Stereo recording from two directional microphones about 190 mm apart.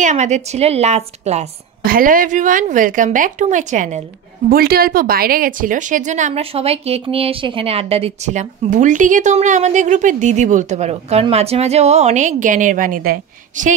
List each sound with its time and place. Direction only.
0.0 s a woman's voice: 35° right (ahead or behind)
1.9 s speech: 45° right (ahead or behind)
4.5 s a woman's voice: 50° right (ahead or behind)